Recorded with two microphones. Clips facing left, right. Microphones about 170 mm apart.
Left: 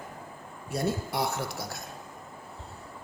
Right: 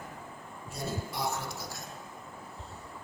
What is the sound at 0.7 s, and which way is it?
Speech, 70° left (ahead or behind).